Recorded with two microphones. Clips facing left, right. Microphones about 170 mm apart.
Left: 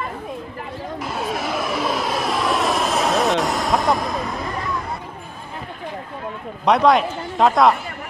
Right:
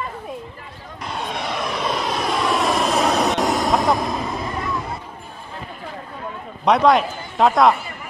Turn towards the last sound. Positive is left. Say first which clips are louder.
# even
turn(degrees=0)  # may be behind; listen again after turning